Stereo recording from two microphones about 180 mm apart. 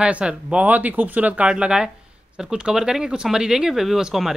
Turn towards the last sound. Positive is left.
turn(degrees=0)  # may be behind; listen again after turning